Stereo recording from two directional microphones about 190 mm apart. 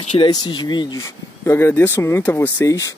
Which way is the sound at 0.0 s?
25° left (ahead or behind).